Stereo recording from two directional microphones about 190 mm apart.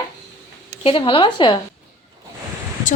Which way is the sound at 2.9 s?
40° left (ahead or behind).